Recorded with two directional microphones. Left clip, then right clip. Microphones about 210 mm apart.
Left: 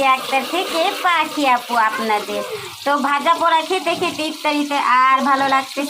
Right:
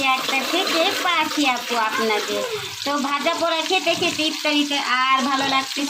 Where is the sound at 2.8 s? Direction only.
Centre (ahead or behind).